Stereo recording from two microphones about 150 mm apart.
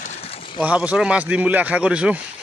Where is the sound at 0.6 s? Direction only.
10° right (ahead or behind).